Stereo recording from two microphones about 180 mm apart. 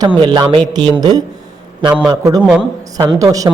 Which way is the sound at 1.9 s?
5° right (ahead or behind).